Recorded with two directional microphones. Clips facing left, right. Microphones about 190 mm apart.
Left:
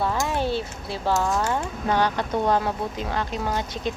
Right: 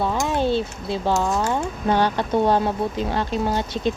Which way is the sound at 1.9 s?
30° right (ahead or behind).